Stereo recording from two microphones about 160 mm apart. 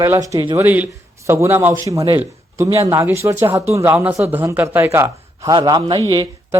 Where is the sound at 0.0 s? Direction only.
20° right (ahead or behind).